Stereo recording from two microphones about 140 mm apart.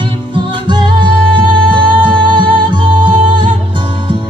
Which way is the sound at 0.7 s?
30° right (ahead or behind).